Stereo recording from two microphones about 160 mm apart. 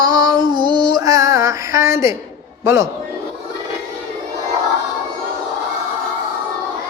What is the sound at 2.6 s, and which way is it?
Speech, 20° right (ahead or behind).